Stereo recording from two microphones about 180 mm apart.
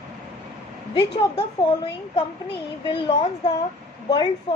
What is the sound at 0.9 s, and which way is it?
A woman's voice, 30° left (ahead or behind).